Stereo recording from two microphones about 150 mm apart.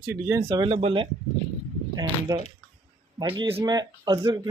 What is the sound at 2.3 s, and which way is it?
Speech, 30° right (ahead or behind).